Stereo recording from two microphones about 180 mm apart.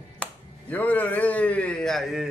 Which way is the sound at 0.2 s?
10° left (ahead or behind).